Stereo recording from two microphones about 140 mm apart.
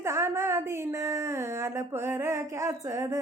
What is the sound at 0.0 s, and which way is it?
A woman's voice, 20° right (ahead or behind).